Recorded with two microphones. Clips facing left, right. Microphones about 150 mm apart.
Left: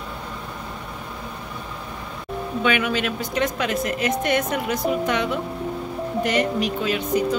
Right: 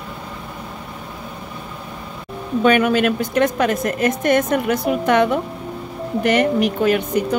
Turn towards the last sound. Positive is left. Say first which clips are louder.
# right 5 dB
turn(degrees=-55)  # may be behind; listen again after turning